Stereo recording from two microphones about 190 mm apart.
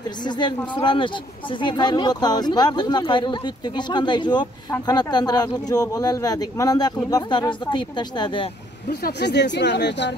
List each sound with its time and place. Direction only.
0.2 s speech: 25° left (ahead or behind)
9.0 s speech: 65° left (ahead or behind)